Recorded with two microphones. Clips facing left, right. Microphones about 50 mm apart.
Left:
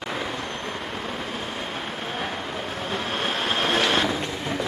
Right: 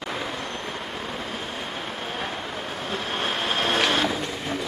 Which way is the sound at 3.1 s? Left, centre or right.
Centre.